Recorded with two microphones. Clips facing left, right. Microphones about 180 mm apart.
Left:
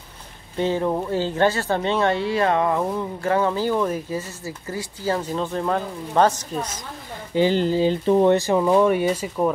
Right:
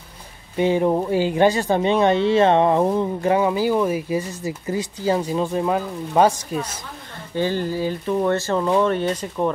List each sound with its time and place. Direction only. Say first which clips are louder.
0.6 s speech: right 4 dB; 15° right (ahead or behind)
7.3 s speech: left 4 dB; 20° left (ahead or behind)
8.3 s speech: left 3 dB; 15° left (ahead or behind)